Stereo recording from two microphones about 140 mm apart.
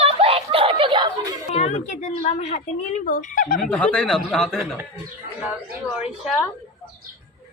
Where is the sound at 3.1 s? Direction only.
75° left (ahead or behind).